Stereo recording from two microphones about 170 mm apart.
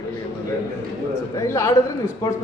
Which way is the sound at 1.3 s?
15° left (ahead or behind).